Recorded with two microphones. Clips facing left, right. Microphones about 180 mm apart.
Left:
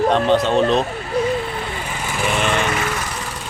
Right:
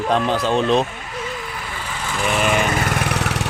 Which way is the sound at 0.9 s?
35° left (ahead or behind).